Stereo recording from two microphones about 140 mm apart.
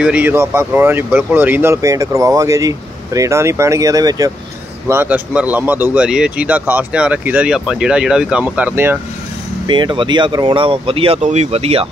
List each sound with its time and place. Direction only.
0.0 s speech: 10° right (ahead or behind); by 4.3 s 25° right (ahead or behind)
4.8 s a man's voice: 15° right (ahead or behind)
9.7 s speech: 35° right (ahead or behind)